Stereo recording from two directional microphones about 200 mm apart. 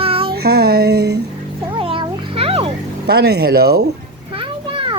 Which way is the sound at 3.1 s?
55° right (ahead or behind).